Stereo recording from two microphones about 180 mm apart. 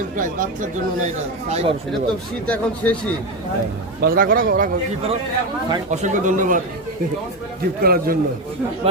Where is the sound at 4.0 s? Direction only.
55° right (ahead or behind).